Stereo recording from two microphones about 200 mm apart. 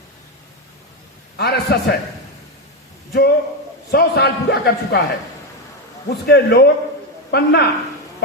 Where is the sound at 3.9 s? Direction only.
55° left (ahead or behind).